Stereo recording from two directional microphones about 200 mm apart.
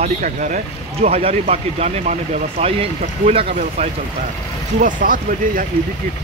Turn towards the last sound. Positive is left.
turn(degrees=-45)  # may be behind; listen again after turning